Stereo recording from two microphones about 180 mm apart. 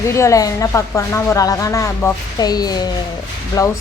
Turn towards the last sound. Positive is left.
turn(degrees=20)  # may be behind; listen again after turning